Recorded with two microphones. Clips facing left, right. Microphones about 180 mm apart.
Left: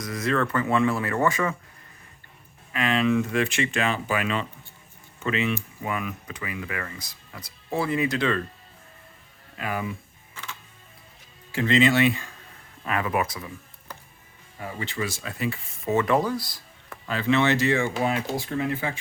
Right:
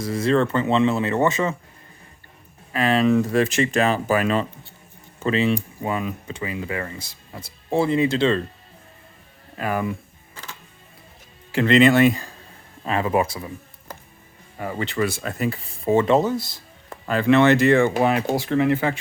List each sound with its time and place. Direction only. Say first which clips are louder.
0.0 s speech: right 6 dB; 30° right (ahead or behind)
2.7 s speech: right 4 dB; 35° right (ahead or behind)
9.6 s speech: right 6 dB; 45° right (ahead or behind)
10.3 s music: even; 35° right (ahead or behind)
11.5 s speech: right 5 dB; 65° right (ahead or behind); by 12.3 s 40° right (ahead or behind)
12.8 s speech: right 5 dB; 30° right (ahead or behind)
14.6 s speech: right 7 dB; 60° right (ahead or behind); by 17.0 s 25° right (ahead or behind)
17.1 s speech: right 6 dB; 55° right (ahead or behind); by 18.9 s 75° right (ahead or behind)